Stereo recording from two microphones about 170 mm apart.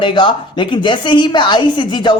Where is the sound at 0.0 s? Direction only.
30° left (ahead or behind).